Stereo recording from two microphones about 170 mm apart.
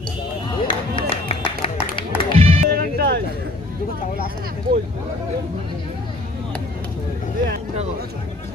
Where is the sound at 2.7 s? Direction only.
65° right (ahead or behind).